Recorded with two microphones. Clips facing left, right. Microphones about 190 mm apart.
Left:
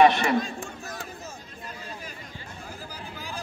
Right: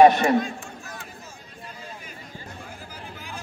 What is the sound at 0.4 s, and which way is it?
Chatter, 35° left (ahead or behind).